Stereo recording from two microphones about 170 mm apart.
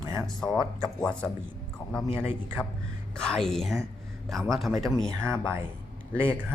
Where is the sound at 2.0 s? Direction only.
35° left (ahead or behind).